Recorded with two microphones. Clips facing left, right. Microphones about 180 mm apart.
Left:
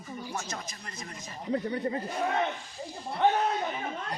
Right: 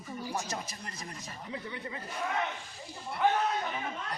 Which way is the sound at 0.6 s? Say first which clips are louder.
Left 1 dB; 35° right (ahead or behind).